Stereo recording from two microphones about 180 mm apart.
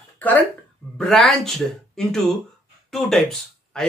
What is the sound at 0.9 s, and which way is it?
Speech, 5° left (ahead or behind).